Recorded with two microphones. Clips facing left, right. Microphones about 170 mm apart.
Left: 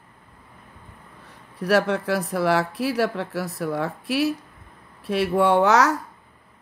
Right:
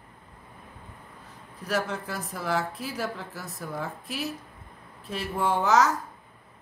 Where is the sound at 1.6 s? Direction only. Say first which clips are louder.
Left 9 dB; 70° left (ahead or behind).